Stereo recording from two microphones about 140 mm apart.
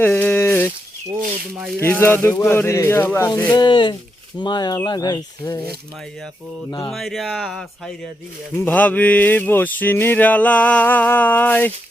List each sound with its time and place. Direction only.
0.0 s a sound: 10° left (ahead or behind)
1.8 s speech: 15° left (ahead or behind)
3.5 s speech: 35° left (ahead or behind)
6.8 s speech: centre (ahead or behind)
8.5 s speech: 10° left (ahead or behind)